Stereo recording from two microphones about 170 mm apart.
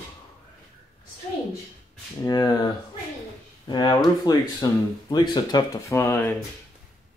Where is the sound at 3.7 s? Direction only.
25° left (ahead or behind).